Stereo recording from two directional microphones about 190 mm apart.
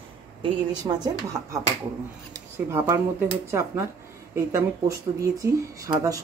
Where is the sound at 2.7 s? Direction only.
15° right (ahead or behind).